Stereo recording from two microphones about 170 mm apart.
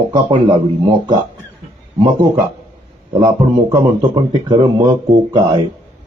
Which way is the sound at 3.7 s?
25° right (ahead or behind).